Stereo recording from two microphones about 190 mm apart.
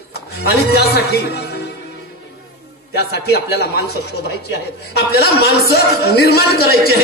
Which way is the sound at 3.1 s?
60° left (ahead or behind).